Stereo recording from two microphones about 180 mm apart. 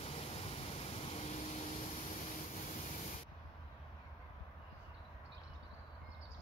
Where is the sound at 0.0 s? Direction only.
35° left (ahead or behind).